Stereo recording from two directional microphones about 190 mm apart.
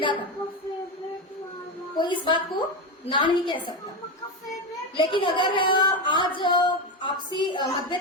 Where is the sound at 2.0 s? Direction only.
25° left (ahead or behind).